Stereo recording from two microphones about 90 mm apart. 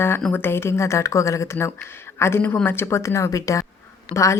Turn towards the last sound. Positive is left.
turn(degrees=35)  # may be behind; listen again after turning